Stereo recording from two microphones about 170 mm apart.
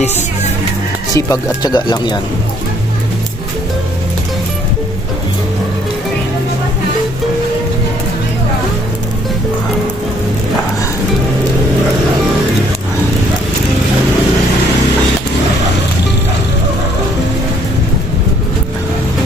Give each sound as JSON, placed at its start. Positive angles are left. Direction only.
{"t": 1.1, "sound": "speech", "side_deg": 20}